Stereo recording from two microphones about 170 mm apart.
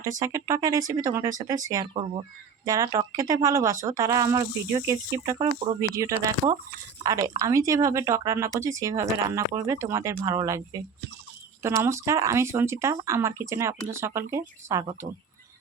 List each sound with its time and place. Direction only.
0.0 s speech: 20° right (ahead or behind)
2.6 s speech: 20° right (ahead or behind)